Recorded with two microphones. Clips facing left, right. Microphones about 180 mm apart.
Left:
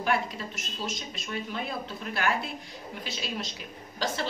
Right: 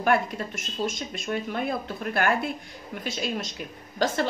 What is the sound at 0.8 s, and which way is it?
A woman's voice, 50° right (ahead or behind).